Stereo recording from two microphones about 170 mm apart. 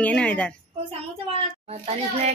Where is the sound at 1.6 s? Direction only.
40° right (ahead or behind).